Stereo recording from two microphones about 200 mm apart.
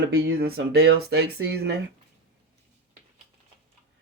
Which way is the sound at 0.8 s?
90° right.